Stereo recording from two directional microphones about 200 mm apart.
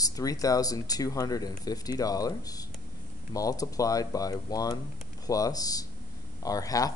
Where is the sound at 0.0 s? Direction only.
15° left (ahead or behind).